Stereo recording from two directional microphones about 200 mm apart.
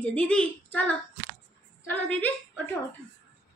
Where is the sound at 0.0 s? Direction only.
5° left (ahead or behind).